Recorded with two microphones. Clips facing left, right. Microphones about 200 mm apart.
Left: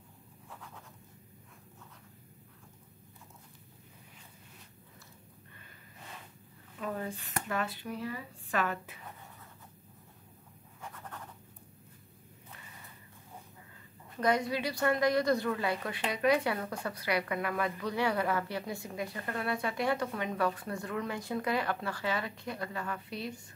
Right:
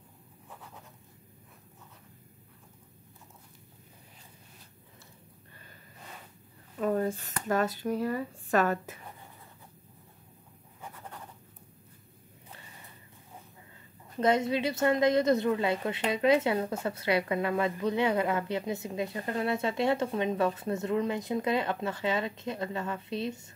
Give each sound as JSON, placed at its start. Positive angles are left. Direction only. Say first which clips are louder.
{"t": 6.8, "sound": "speech", "louder": "right 9 dB", "side_deg": -45}
{"t": 10.8, "sound": "writing", "louder": "right 1 dB", "side_deg": -10}
{"t": 14.2, "sound": "a woman's voice", "louder": "right 4 dB", "side_deg": -25}